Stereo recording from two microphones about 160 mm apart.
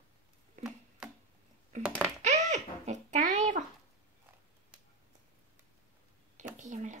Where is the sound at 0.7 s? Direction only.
5° right (ahead or behind).